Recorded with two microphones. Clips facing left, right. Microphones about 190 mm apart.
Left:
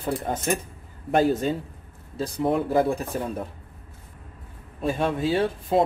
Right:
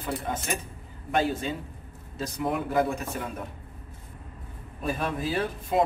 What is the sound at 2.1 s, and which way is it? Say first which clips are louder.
Speech: left 5 dB; 30° left (ahead or behind).